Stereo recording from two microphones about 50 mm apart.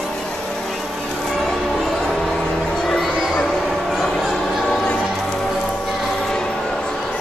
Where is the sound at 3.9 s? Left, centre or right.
Centre.